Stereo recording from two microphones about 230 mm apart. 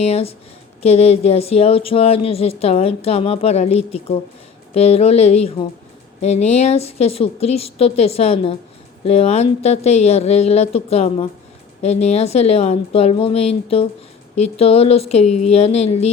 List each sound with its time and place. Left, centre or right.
0.0 s speech: left